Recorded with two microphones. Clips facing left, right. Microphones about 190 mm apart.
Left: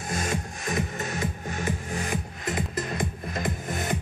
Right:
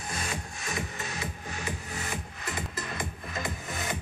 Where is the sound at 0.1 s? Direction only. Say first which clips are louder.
Left 7 dB; 45° left (ahead or behind).